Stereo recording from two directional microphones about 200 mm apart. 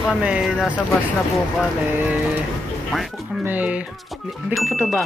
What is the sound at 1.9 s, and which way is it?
Speech, 10° right (ahead or behind).